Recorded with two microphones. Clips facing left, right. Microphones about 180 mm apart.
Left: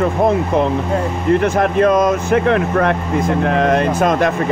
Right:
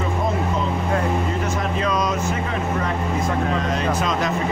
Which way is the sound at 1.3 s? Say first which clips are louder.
Left 10 dB; 65° left (ahead or behind).